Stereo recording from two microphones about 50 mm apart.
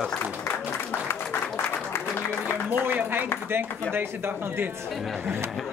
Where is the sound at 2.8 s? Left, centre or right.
Right.